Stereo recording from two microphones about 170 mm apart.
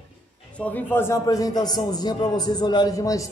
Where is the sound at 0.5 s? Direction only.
10° left (ahead or behind).